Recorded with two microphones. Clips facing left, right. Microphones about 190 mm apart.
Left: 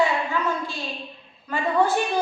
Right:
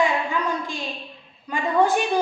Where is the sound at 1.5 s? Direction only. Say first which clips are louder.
Right 1 dB; 15° right (ahead or behind).